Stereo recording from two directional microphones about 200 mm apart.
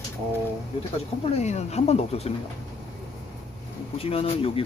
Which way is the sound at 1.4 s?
35° left (ahead or behind).